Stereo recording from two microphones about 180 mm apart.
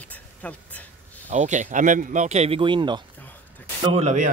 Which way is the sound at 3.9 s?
40° right (ahead or behind).